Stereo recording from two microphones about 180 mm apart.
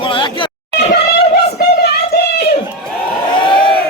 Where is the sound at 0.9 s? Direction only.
65° left (ahead or behind).